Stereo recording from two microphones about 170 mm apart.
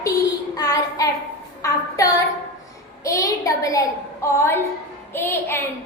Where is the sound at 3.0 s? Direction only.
20° left (ahead or behind).